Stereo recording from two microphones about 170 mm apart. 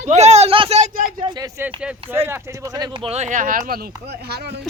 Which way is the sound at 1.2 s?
25° right (ahead or behind).